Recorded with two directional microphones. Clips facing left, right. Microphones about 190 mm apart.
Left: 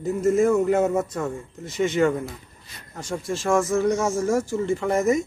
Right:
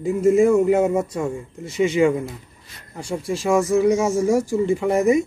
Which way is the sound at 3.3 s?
10° right (ahead or behind).